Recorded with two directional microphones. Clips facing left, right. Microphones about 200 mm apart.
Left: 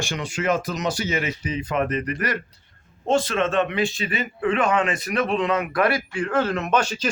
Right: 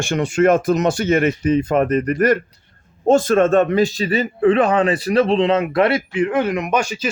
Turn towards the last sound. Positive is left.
turn(degrees=-10)  # may be behind; listen again after turning